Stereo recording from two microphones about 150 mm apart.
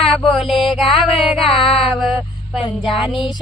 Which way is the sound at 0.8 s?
35° left (ahead or behind).